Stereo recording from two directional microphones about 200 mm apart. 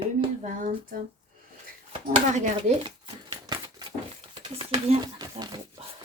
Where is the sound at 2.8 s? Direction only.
25° right (ahead or behind).